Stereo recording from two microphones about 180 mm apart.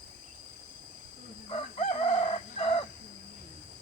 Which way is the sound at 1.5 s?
35° left (ahead or behind).